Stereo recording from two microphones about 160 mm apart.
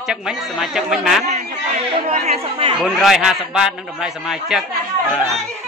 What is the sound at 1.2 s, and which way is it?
Speech, 45° right (ahead or behind).